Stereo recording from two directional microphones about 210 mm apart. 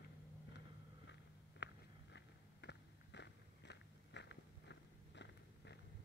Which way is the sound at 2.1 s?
55° left (ahead or behind).